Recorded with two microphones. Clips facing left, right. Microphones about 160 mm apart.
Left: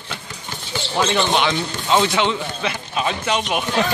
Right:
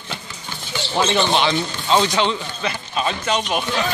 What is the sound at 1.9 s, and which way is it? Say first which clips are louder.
Speech: even; 10° left (ahead or behind).